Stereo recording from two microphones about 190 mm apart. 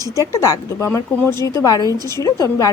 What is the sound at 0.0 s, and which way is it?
Speech, 15° right (ahead or behind).